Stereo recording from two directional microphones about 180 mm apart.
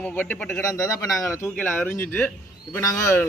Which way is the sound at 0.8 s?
20° left (ahead or behind).